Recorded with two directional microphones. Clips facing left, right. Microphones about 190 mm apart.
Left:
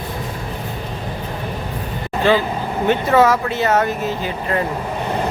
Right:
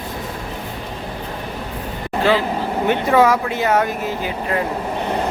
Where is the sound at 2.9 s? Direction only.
10° right (ahead or behind).